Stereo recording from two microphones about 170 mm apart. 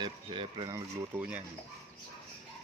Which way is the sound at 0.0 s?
30° right (ahead or behind).